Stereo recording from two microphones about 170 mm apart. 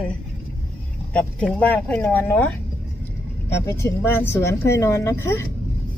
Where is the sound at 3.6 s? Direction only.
15° left (ahead or behind).